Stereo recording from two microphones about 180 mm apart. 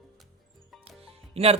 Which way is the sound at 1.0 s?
35° right (ahead or behind).